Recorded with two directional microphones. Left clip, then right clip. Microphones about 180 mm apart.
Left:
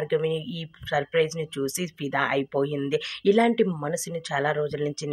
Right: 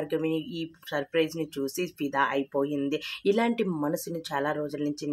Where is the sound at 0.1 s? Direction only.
20° left (ahead or behind).